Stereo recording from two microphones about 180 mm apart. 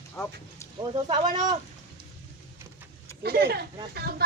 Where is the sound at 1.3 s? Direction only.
25° right (ahead or behind).